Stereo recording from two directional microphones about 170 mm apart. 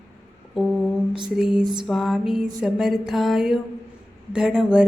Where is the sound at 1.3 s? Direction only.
5° right (ahead or behind).